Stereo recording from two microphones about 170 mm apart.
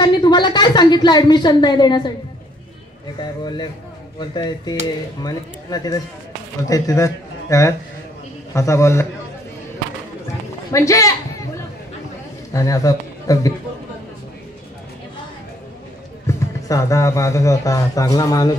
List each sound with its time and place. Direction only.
0.0 s a woman's voice: 25° left (ahead or behind)
3.2 s a man's voice: 25° left (ahead or behind)
10.7 s speech: 20° left (ahead or behind)
12.5 s speech: 20° left (ahead or behind)
16.3 s speech: 20° left (ahead or behind)